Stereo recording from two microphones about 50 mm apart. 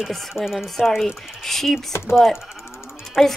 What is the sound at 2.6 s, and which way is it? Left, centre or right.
Sheep, left.